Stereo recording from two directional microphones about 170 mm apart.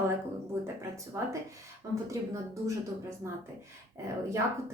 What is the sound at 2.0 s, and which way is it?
A woman's voice, 20° right (ahead or behind).